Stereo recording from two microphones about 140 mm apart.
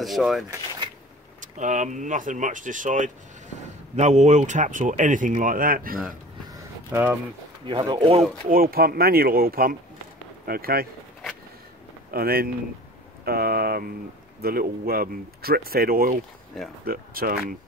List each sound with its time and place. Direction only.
0.0 s speech: centre (ahead or behind)
1.4 s speech: 65° right (ahead or behind)
3.6 s a man's voice: 55° right (ahead or behind); by 6.1 s 90° right
6.9 s speech: 15° right (ahead or behind)
7.6 s speech: 35° right (ahead or behind)
8.5 s speech: 90° right
12.1 s speech: 90° right